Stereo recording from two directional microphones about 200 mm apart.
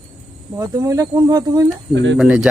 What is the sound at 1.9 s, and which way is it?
Speech, 65° right (ahead or behind).